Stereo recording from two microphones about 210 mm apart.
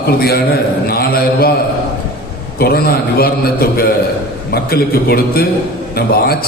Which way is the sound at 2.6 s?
50° left (ahead or behind).